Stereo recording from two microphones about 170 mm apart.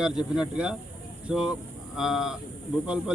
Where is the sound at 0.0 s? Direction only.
5° right (ahead or behind).